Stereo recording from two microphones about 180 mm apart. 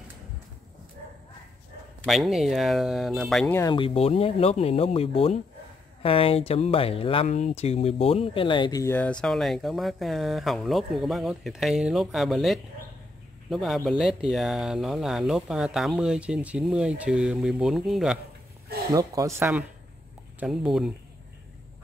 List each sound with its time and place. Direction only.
2.0 s speech: centre (ahead or behind)
3.5 s speech: 25° left (ahead or behind)
8.8 s speech: 10° left (ahead or behind)
18.9 s speech: 20° right (ahead or behind); by 20.9 s centre (ahead or behind)